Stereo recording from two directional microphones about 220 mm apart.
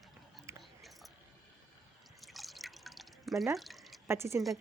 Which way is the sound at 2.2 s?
Centre (ahead or behind).